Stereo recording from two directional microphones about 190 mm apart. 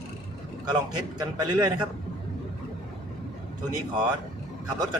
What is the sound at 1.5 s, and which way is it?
Speech, 20° right (ahead or behind).